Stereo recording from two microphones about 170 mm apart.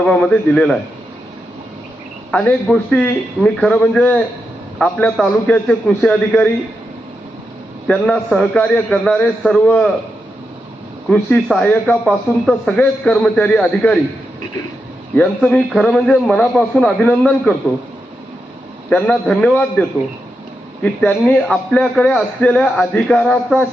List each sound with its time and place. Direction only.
0.0 s a man's voice: 5° left (ahead or behind)
2.3 s speech: 10° left (ahead or behind)
7.9 s speech: 5° left (ahead or behind)
11.1 s speech: 5° left (ahead or behind)
15.1 s a man's voice: 5° left (ahead or behind)
18.9 s a man's voice: 5° left (ahead or behind)
20.8 s a man's voice: 5° left (ahead or behind)